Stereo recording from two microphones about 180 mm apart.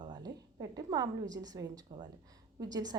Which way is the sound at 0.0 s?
25° right (ahead or behind).